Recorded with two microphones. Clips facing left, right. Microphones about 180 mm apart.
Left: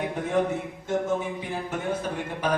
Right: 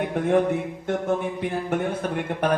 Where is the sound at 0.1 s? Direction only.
60° right (ahead or behind).